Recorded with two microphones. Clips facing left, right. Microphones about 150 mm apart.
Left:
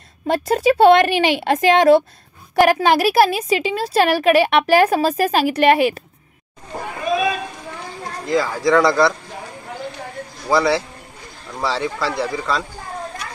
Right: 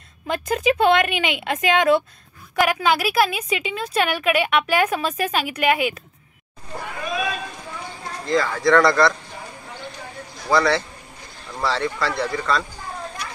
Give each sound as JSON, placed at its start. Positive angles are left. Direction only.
{"t": 0.3, "sound": "a woman's voice", "side_deg": 35}
{"t": 8.3, "sound": "speech", "side_deg": 10}
{"t": 10.5, "sound": "a man's voice", "side_deg": 10}